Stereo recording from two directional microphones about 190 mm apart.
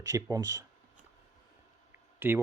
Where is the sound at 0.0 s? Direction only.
15° right (ahead or behind).